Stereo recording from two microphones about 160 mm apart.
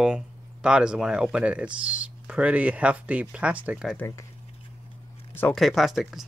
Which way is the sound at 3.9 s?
15° left (ahead or behind).